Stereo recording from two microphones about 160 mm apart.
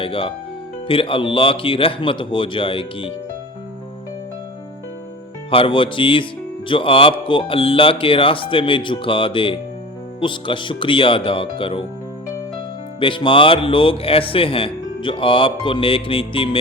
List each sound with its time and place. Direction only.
0.0 s speech: 35° left (ahead or behind)
5.5 s speech: 35° left (ahead or behind)
13.0 s speech: 30° left (ahead or behind)